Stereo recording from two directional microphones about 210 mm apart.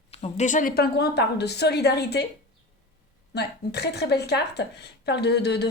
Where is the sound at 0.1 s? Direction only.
35° left (ahead or behind); by 2.2 s 50° left (ahead or behind).